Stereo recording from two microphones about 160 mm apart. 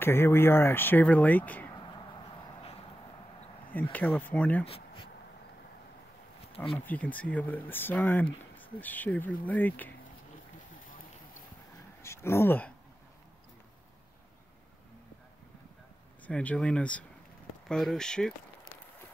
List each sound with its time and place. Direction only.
0.0 s speech: 15° left (ahead or behind)
3.9 s speech: 10° left (ahead or behind)
4.6 s a sound: 35° left (ahead or behind)
6.7 s speech: 10° left (ahead or behind)
12.0 s speech: 15° left (ahead or behind)
16.3 s speech: 5° left (ahead or behind)